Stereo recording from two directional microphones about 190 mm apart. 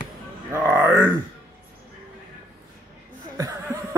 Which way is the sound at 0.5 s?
15° right (ahead or behind).